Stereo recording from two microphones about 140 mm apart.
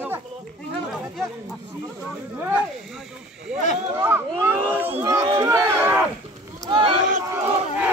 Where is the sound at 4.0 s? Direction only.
15° right (ahead or behind).